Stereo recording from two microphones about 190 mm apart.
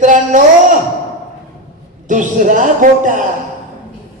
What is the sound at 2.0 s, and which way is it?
A man's voice, 40° right (ahead or behind).